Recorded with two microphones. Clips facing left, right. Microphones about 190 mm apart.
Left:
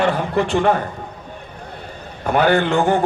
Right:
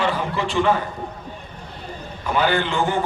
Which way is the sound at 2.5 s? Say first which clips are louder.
Left 5 dB; 45° left (ahead or behind).